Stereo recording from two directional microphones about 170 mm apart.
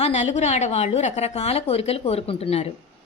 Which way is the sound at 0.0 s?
40° left (ahead or behind).